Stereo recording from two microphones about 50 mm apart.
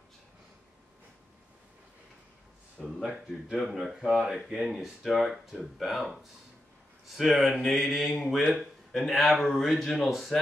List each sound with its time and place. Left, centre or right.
3.0 s speech: centre